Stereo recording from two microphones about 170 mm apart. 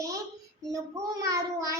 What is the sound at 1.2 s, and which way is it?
Speech, 20° right (ahead or behind).